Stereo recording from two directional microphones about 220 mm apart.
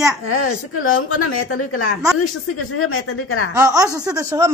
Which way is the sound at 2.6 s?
75° left (ahead or behind).